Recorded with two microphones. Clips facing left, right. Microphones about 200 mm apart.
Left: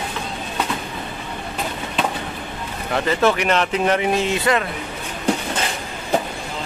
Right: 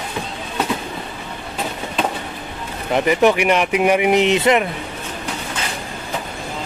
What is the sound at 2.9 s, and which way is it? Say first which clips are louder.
Speech: right 4 dB; 15° right (ahead or behind).